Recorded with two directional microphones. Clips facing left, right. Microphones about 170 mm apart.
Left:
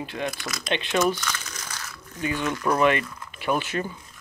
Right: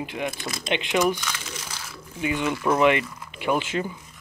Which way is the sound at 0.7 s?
15° right (ahead or behind).